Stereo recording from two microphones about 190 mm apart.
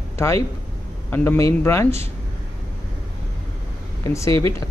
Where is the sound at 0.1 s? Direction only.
15° left (ahead or behind).